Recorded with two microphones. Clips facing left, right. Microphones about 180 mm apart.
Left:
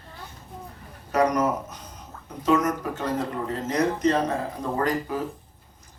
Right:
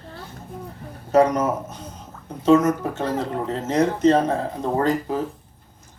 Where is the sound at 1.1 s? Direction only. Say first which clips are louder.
Right 4 dB; 25° right (ahead or behind).